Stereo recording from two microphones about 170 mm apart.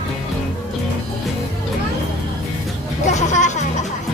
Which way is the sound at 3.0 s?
45° left (ahead or behind).